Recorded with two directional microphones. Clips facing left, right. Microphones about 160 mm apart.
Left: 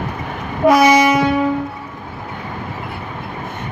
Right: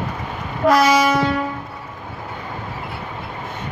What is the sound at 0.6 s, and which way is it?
Train, 20° left (ahead or behind).